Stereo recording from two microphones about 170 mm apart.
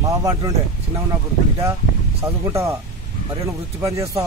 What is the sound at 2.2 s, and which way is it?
A man's voice, 15° right (ahead or behind).